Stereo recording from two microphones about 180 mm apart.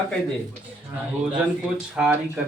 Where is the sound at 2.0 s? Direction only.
5° right (ahead or behind).